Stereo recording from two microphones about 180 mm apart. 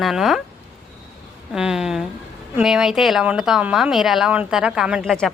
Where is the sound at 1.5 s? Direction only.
5° right (ahead or behind).